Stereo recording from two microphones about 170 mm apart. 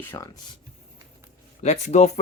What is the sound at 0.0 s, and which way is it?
Speech, 15° left (ahead or behind).